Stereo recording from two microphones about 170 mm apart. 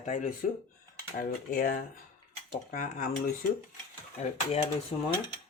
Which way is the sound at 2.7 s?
45° left (ahead or behind).